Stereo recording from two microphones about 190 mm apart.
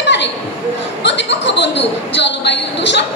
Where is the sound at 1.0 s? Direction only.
65° left (ahead or behind).